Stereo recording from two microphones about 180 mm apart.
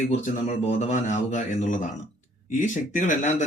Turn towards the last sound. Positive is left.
turn(degrees=40)  # may be behind; listen again after turning